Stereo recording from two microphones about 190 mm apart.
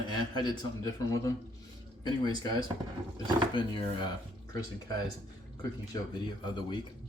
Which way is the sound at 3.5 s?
25° left (ahead or behind).